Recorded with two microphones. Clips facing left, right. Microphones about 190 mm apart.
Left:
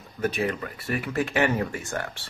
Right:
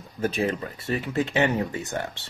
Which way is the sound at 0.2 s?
30° right (ahead or behind).